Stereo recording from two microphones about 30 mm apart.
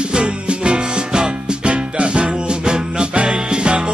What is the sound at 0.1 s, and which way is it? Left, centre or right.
Music, right.